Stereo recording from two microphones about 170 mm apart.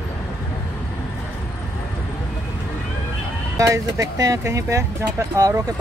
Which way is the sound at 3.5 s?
20° right (ahead or behind).